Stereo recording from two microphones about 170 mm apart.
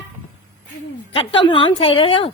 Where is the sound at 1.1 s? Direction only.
30° left (ahead or behind).